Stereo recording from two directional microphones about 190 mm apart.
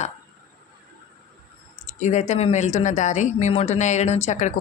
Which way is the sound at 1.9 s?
40° left (ahead or behind).